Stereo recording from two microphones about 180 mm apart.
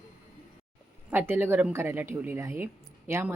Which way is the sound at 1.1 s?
10° right (ahead or behind).